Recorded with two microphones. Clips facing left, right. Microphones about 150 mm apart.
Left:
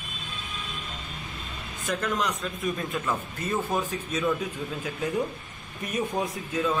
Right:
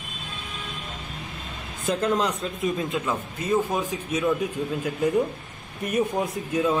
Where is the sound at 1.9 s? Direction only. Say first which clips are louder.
Right 5 dB; 30° right (ahead or behind); by 4.4 s 10° right (ahead or behind).